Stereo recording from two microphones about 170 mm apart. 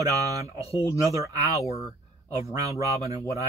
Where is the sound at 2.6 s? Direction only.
20° right (ahead or behind).